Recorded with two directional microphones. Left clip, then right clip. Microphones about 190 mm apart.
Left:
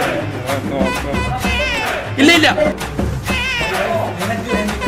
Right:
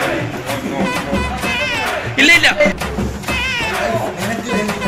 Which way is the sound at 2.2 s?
25° left (ahead or behind).